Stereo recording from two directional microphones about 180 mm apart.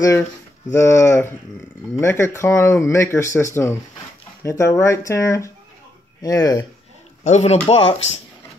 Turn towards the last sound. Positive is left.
turn(degrees=30)  # may be behind; listen again after turning